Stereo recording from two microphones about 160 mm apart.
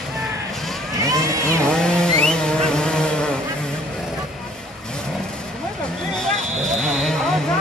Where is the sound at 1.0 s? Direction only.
20° right (ahead or behind).